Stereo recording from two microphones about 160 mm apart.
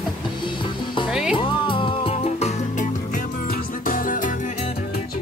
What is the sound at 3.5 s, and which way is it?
Music, 60° left (ahead or behind).